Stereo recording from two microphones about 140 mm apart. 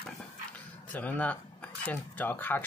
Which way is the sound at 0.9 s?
10° left (ahead or behind).